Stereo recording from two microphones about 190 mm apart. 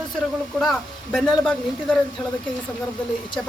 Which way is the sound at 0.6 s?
Centre (ahead or behind).